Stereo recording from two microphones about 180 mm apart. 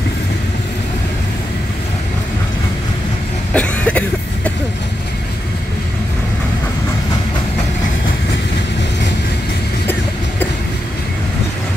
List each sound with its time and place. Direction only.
3.5 s cough: 5° left (ahead or behind)